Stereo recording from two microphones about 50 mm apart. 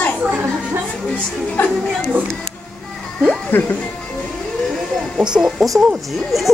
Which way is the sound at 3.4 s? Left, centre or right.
Left.